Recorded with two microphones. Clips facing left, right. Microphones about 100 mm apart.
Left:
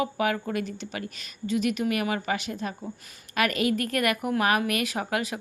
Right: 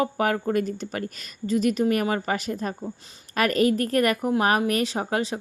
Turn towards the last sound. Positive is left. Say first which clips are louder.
# right 3 dB
turn(degrees=-30)  # may be behind; listen again after turning